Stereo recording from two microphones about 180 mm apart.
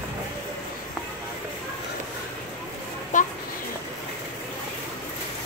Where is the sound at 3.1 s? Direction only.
45° left (ahead or behind).